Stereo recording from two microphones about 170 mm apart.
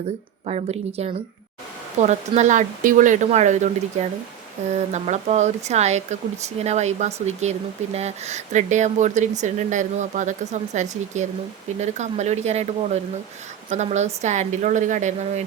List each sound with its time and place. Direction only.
0.4 s speech: 40° right (ahead or behind)
4.9 s speech: 40° right (ahead or behind)